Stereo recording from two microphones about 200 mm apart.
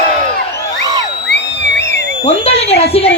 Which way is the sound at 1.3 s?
60° left (ahead or behind).